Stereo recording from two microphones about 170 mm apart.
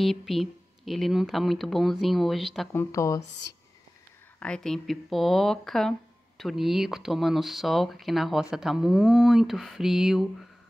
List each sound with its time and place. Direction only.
0.0 s speech: centre (ahead or behind)
2.7 s speech: 15° left (ahead or behind)
4.4 s speech: 5° left (ahead or behind)